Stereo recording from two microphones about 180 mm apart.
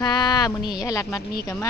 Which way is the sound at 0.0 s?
25° left (ahead or behind).